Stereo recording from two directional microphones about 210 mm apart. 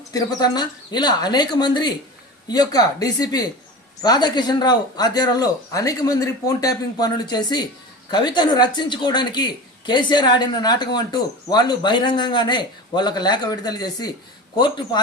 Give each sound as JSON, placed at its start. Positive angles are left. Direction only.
{"t": 0.1, "sound": "speech", "side_deg": 20}